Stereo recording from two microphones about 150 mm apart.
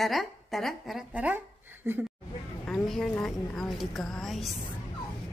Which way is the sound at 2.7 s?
5° left (ahead or behind).